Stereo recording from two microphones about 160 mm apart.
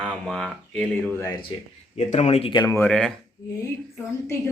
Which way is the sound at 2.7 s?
5° left (ahead or behind).